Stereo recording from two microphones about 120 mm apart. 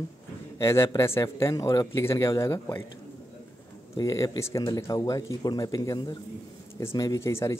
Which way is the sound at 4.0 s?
25° left (ahead or behind).